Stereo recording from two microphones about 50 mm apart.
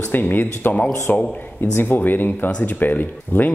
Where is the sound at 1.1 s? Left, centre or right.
Left.